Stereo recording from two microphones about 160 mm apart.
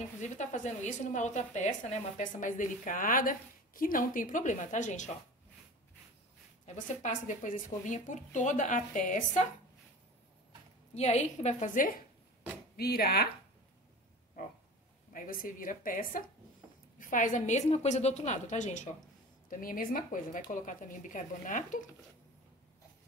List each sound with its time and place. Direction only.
0.2 s a woman's voice: 50° left (ahead or behind)
6.6 s a woman's voice: 50° left (ahead or behind)
11.0 s a woman's voice: 45° left (ahead or behind)
12.7 s speech: 75° left (ahead or behind)
15.1 s a woman's voice: 60° left (ahead or behind)
19.6 s a woman's voice: 60° left (ahead or behind)